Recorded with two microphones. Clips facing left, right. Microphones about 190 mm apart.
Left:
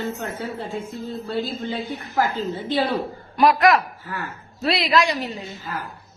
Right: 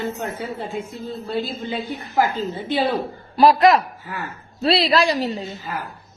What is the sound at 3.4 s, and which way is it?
A man's voice, 30° right (ahead or behind).